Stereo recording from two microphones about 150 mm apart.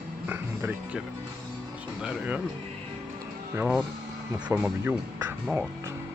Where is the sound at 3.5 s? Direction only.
10° right (ahead or behind).